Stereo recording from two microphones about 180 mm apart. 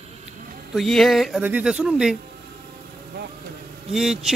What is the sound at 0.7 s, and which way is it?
Speech, centre (ahead or behind).